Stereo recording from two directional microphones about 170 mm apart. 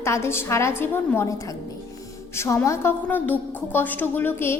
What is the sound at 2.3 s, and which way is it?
A woman's voice, 20° left (ahead or behind).